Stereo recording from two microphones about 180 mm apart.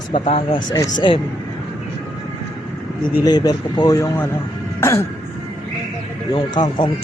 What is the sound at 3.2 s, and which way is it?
Speech, 25° left (ahead or behind).